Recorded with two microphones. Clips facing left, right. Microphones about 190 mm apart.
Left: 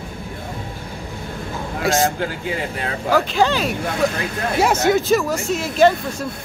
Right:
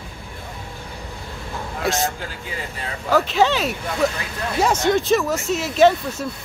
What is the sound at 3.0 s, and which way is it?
Speech, centre (ahead or behind).